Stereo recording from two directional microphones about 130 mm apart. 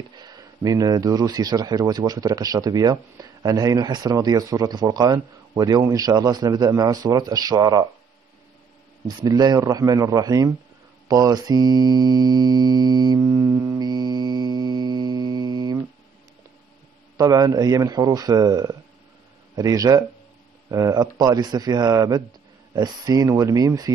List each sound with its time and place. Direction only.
0.1 s speech: 30° right (ahead or behind)
9.0 s speech: 30° right (ahead or behind)
11.1 s hum: 30° right (ahead or behind)
17.2 s speech: 30° right (ahead or behind)